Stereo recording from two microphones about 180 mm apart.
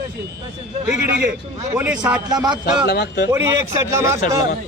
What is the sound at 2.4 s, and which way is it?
Speech, 20° right (ahead or behind).